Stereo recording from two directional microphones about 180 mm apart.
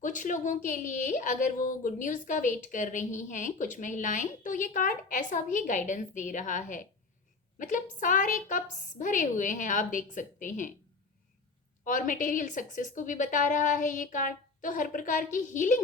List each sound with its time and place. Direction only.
0.0 s a woman's voice: 45° left (ahead or behind)
11.9 s a woman's voice: 45° left (ahead or behind)